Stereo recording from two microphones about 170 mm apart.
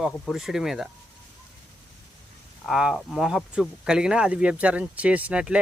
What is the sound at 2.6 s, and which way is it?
Speech, centre (ahead or behind).